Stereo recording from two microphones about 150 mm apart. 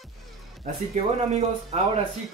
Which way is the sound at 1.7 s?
45° right (ahead or behind).